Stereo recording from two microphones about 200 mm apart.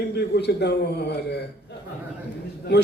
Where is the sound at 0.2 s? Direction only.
55° left (ahead or behind).